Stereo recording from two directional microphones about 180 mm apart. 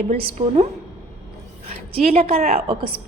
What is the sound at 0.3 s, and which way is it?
A woman's voice, 35° right (ahead or behind).